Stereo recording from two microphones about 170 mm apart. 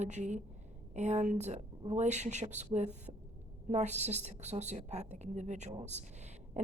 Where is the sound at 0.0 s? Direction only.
45° right (ahead or behind).